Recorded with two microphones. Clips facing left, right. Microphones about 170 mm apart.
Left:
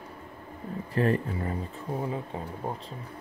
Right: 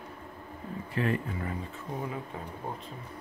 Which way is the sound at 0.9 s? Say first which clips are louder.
Left 4 dB; 40° left (ahead or behind).